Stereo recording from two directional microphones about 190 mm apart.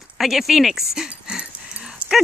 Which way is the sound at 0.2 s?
Centre (ahead or behind).